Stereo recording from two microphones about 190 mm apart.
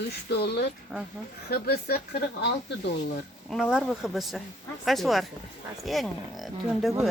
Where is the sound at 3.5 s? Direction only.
5° right (ahead or behind).